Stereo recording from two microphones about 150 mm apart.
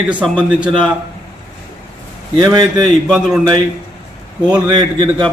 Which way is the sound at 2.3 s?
30° right (ahead or behind).